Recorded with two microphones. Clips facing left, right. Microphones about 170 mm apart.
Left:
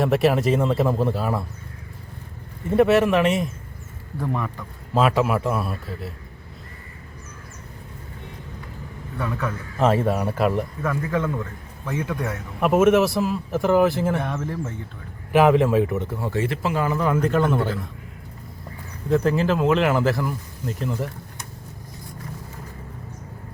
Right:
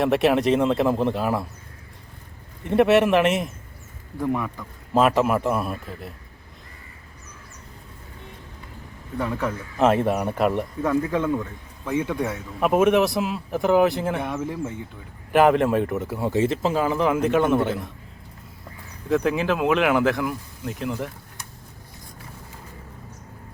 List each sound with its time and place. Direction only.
0.0 s a man's voice: centre (ahead or behind)
2.6 s a man's voice: centre (ahead or behind)
9.1 s speech: 20° right (ahead or behind)
9.9 s a man's voice: centre (ahead or behind)
10.8 s a man's voice: 20° right (ahead or behind)
12.5 s a man's voice: centre (ahead or behind)
14.2 s a man's voice: 10° right (ahead or behind)
15.3 s a man's voice: centre (ahead or behind)
16.1 s a man's voice: 20° right (ahead or behind)
19.2 s a man's voice: 10° right (ahead or behind)